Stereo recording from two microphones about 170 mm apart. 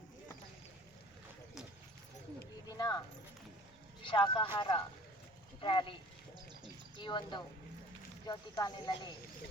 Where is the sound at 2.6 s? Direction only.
20° left (ahead or behind).